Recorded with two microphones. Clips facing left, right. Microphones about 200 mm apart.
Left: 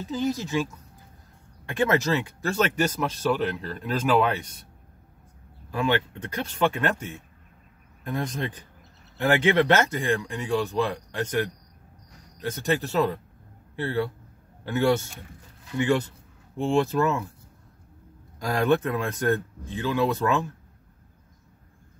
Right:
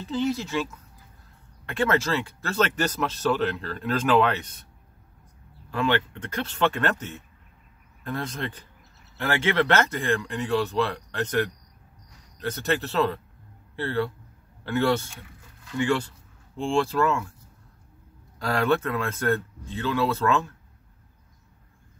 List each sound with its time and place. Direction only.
0.1 s speech: 15° left (ahead or behind)
1.7 s speech: 15° left (ahead or behind)
5.7 s speech: 15° left (ahead or behind)
18.4 s speech: 15° left (ahead or behind)